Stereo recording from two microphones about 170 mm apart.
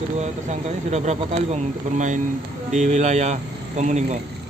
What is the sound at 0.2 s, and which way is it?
Speech, 40° right (ahead or behind).